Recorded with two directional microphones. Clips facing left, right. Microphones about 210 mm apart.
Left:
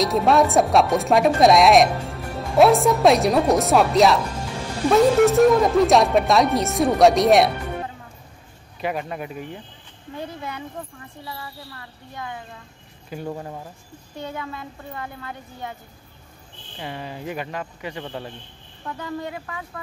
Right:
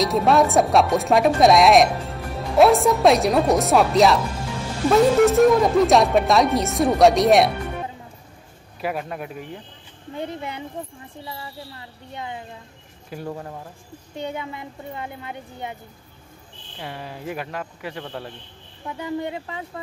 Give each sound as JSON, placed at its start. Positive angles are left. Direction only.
{"t": 0.0, "sound": "speech", "side_deg": 0}
{"t": 8.8, "sound": "speech", "side_deg": 0}
{"t": 10.1, "sound": "a woman's voice", "side_deg": -25}
{"t": 13.1, "sound": "speech", "side_deg": 0}
{"t": 14.1, "sound": "a woman's voice", "side_deg": -20}
{"t": 16.7, "sound": "speech", "side_deg": 0}
{"t": 18.9, "sound": "a woman's voice", "side_deg": -20}